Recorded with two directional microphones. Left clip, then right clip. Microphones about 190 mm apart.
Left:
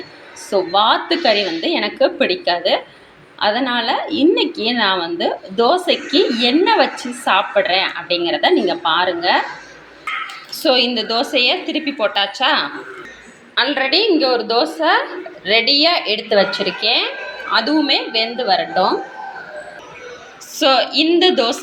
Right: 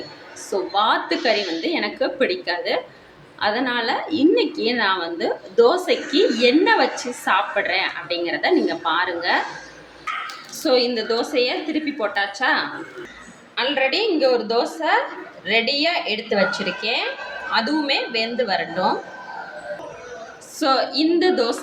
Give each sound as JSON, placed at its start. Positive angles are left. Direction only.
{"t": 0.5, "sound": "a woman's voice", "side_deg": 5}
{"t": 10.6, "sound": "a woman's voice", "side_deg": 5}
{"t": 20.6, "sound": "a woman's voice", "side_deg": 5}